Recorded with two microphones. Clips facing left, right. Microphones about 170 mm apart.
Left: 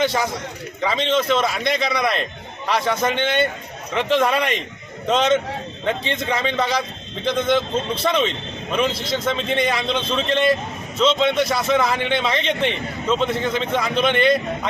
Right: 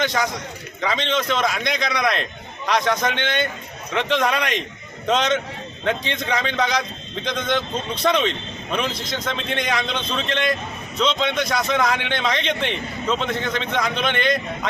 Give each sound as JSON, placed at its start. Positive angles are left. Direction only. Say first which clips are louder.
{"t": 0.0, "sound": "a man's voice", "louder": "left 2 dB", "side_deg": 5}